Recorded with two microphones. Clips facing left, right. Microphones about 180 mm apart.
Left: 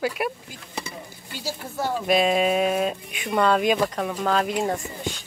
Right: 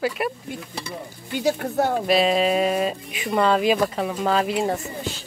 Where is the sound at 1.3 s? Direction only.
60° right (ahead or behind).